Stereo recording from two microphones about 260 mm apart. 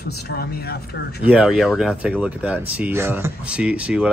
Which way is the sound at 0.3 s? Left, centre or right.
Left.